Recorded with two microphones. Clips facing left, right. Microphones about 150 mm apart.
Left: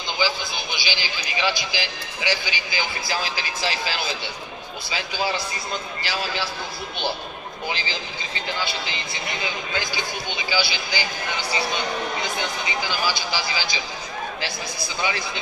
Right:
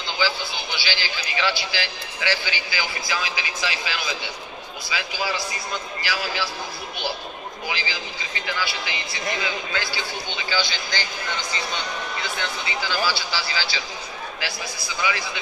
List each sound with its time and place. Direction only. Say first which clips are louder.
0.2 s a man's voice: even; 15° left (ahead or behind)
3.1 s a man's voice: left 1 dB; 35° left (ahead or behind)
7.6 s a man's voice: left 1 dB; 25° left (ahead or behind); by 11.1 s 10° left (ahead or behind)
12.2 s a man's voice: left 2 dB; 15° left (ahead or behind)
15.0 s a man's voice: right 1 dB; 25° left (ahead or behind)